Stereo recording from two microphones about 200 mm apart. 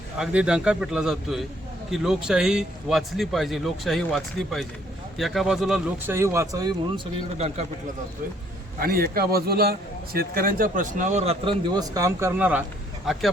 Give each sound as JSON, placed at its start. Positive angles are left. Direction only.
{"t": 0.2, "sound": "a man's voice", "side_deg": -5}
{"t": 8.8, "sound": "a man's voice", "side_deg": -50}